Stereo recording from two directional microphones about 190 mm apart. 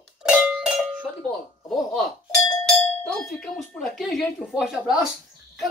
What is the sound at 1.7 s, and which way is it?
Speech, centre (ahead or behind).